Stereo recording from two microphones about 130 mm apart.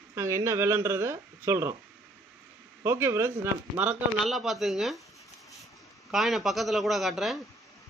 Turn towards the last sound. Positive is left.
turn(degrees=0)  # may be behind; listen again after turning